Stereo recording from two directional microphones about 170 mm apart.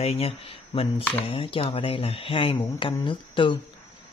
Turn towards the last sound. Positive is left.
turn(degrees=30)  # may be behind; listen again after turning